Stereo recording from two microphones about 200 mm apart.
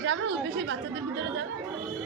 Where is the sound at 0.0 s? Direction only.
65° right (ahead or behind).